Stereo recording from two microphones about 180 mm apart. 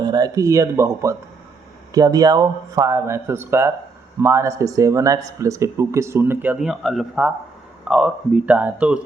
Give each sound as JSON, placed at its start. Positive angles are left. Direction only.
{"t": 0.0, "sound": "speech", "side_deg": -20}